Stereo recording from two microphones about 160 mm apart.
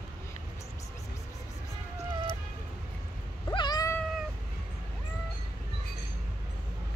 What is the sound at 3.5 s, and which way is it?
Cat, 25° left (ahead or behind).